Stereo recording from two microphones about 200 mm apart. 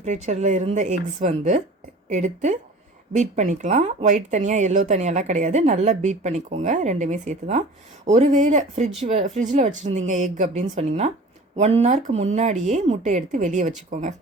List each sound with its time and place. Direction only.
0.0 s speech: 35° right (ahead or behind)